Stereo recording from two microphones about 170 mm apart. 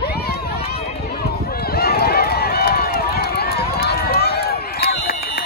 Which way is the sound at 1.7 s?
65° left (ahead or behind).